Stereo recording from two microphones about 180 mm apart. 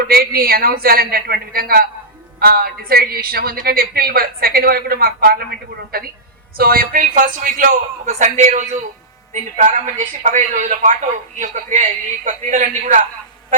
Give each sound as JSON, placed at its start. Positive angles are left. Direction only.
{"t": 0.0, "sound": "speech", "side_deg": -55}